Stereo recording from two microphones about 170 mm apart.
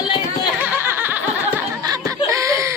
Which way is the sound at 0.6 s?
10° right (ahead or behind).